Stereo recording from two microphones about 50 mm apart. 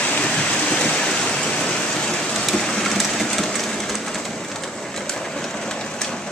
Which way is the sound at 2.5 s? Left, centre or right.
Centre.